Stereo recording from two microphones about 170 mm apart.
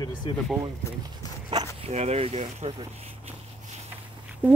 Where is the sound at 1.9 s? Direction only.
40° right (ahead or behind).